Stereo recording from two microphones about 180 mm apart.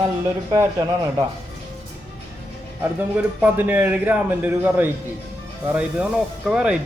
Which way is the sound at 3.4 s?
10° right (ahead or behind).